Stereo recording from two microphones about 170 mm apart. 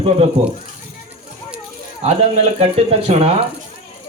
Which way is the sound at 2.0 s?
35° right (ahead or behind).